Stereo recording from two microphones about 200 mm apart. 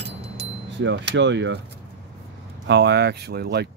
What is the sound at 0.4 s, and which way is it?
Speech, 65° right (ahead or behind).